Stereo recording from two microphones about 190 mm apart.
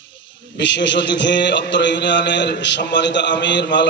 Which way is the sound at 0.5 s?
65° left (ahead or behind).